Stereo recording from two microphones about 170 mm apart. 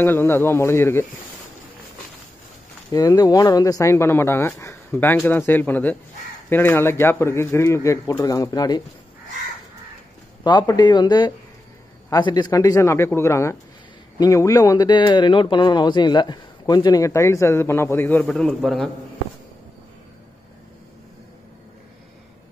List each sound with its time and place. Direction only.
0.0 s speech: 15° left (ahead or behind)
2.9 s speech: 20° left (ahead or behind)
10.4 s speech: 25° left (ahead or behind)
18.2 s a man's voice: centre (ahead or behind)